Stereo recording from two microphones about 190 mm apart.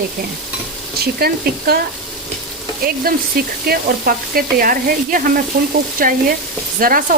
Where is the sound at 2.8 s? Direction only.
50° right (ahead or behind).